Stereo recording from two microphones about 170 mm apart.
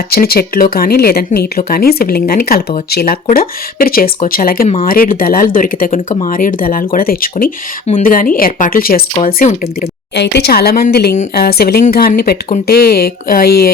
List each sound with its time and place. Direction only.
0.1 s speech: 65° left (ahead or behind)
10.2 s speech: 75° left (ahead or behind)